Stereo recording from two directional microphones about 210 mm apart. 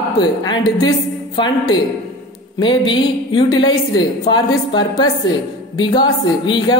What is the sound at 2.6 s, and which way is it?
A man's voice, 20° left (ahead or behind).